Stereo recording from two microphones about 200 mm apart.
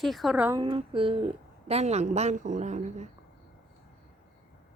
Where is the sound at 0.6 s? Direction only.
25° right (ahead or behind).